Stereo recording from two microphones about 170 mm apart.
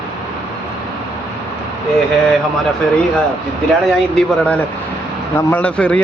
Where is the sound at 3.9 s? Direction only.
5° left (ahead or behind).